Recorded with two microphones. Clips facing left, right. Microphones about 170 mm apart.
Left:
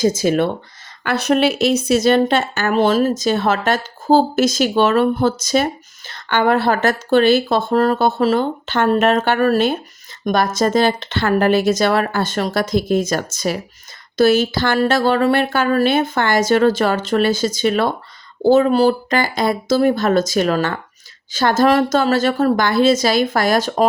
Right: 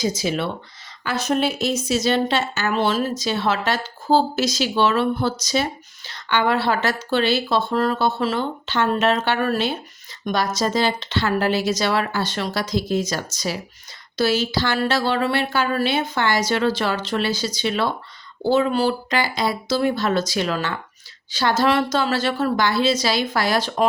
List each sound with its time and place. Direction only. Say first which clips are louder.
0.0 s speech: left 7 dB; 50° left (ahead or behind)
1.0 s speech: left 5 dB; 65° left (ahead or behind); by 23.8 s 45° left (ahead or behind)